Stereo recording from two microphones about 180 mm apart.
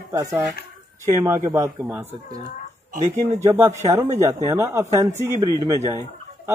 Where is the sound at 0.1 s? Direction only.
15° right (ahead or behind).